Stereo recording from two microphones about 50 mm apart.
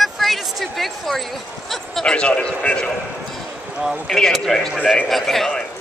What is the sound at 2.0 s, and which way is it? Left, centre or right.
Speech, left.